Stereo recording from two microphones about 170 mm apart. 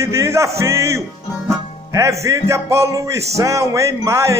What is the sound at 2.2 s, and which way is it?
Speech, 15° right (ahead or behind).